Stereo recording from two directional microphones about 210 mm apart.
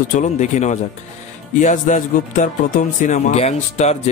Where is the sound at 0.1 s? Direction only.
35° left (ahead or behind).